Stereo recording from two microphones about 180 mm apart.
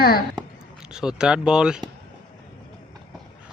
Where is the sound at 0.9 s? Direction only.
5° right (ahead or behind).